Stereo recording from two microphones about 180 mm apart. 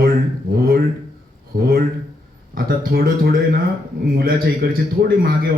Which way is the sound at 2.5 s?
55° right (ahead or behind).